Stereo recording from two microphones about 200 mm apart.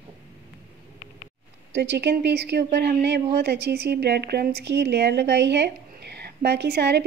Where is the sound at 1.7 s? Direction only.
60° right (ahead or behind).